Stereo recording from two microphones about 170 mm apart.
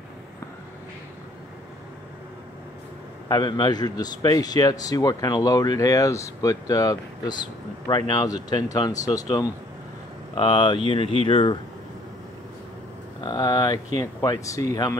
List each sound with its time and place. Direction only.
3.3 s a man's voice: 25° left (ahead or behind)
13.2 s a man's voice: 25° left (ahead or behind)